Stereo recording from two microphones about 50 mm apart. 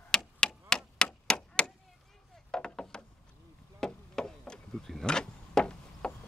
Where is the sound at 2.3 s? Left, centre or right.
Centre.